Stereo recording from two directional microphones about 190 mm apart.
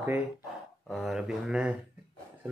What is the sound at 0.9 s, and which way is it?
Speech, centre (ahead or behind).